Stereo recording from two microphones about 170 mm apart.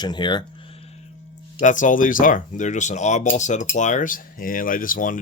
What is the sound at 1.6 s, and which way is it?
Speech, 50° left (ahead or behind).